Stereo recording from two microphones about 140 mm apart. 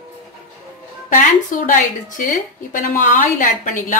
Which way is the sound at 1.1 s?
70° left (ahead or behind).